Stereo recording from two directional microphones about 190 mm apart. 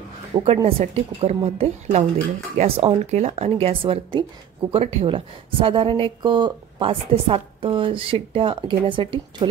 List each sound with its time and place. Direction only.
0.3 s a woman's voice: 25° right (ahead or behind)